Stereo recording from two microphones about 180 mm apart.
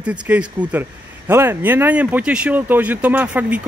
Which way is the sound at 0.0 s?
5° right (ahead or behind).